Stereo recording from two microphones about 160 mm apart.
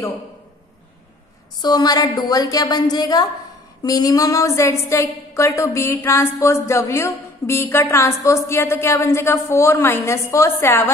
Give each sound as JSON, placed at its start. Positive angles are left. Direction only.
{"t": 1.6, "sound": "a woman's voice", "side_deg": 25}